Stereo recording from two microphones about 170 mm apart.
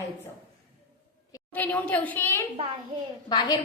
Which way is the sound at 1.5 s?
10° left (ahead or behind).